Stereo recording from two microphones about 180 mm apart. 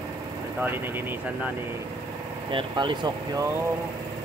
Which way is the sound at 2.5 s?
25° right (ahead or behind).